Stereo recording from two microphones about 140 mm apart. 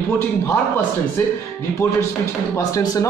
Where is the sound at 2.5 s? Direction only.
25° left (ahead or behind).